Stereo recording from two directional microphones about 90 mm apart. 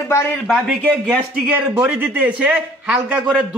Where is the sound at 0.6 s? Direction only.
10° right (ahead or behind).